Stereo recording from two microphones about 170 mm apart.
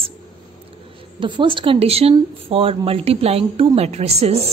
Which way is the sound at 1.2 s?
30° right (ahead or behind).